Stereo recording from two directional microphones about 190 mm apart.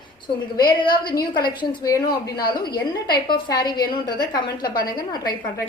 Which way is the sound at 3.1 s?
25° left (ahead or behind).